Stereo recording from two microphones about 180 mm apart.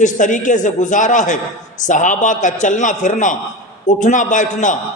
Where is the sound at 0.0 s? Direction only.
45° left (ahead or behind).